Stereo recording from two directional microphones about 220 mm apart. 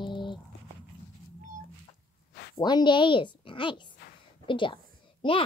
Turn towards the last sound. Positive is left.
turn(degrees=20)  # may be behind; listen again after turning